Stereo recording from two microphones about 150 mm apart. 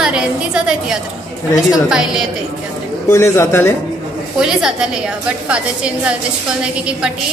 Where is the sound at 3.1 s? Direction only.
15° left (ahead or behind).